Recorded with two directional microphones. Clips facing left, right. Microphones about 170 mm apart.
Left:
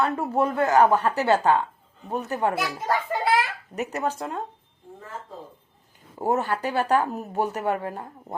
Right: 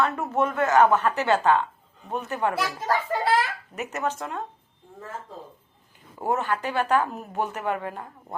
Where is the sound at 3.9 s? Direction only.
35° left (ahead or behind).